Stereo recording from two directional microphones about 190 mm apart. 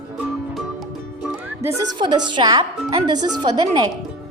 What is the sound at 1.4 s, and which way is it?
Music, 15° right (ahead or behind).